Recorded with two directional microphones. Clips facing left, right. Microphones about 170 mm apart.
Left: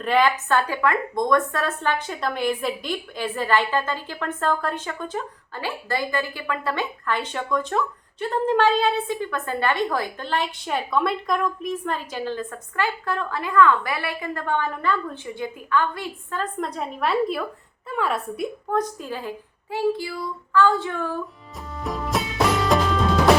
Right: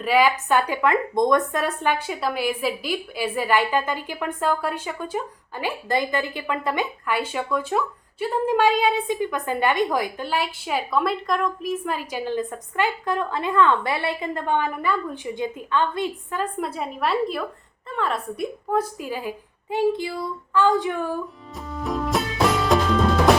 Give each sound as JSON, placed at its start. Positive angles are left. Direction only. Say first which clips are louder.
{"t": 0.0, "sound": "a woman's voice", "louder": "right 1 dB", "side_deg": -5}
{"t": 18.7, "sound": "a woman's voice", "louder": "right 2 dB", "side_deg": -10}
{"t": 19.7, "sound": "a woman's voice", "louder": "right 2 dB", "side_deg": -20}
{"t": 21.7, "sound": "music", "louder": "right 2 dB", "side_deg": 0}